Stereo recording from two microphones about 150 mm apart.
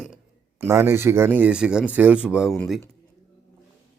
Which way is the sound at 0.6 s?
15° right (ahead or behind).